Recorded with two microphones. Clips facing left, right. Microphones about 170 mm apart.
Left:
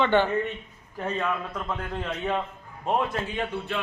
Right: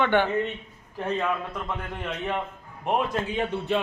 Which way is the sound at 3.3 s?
20° right (ahead or behind).